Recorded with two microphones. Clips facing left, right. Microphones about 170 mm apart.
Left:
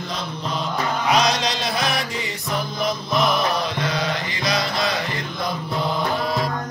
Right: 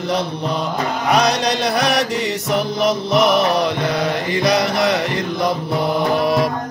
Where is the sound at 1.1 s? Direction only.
65° right (ahead or behind).